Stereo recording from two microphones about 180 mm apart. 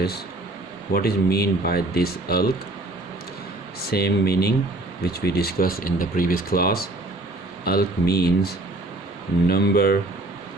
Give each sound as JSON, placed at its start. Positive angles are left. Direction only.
{"t": 0.9, "sound": "speech", "side_deg": 60}
{"t": 3.9, "sound": "speech", "side_deg": 60}